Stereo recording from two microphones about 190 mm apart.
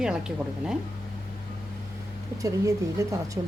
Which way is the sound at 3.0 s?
15° right (ahead or behind).